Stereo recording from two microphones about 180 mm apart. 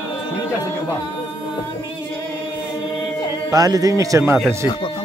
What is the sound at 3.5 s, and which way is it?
Speech, 20° right (ahead or behind).